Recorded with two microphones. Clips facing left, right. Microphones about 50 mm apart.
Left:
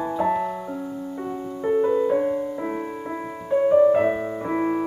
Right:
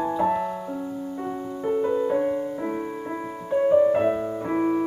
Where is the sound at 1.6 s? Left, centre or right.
Centre.